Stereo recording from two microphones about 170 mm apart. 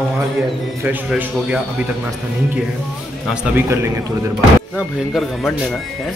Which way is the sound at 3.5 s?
15° right (ahead or behind).